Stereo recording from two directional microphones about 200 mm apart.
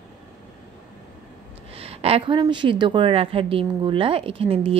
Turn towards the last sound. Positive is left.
turn(degrees=-30)  # may be behind; listen again after turning